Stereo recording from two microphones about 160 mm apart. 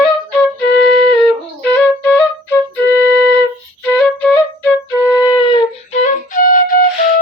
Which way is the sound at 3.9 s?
10° left (ahead or behind).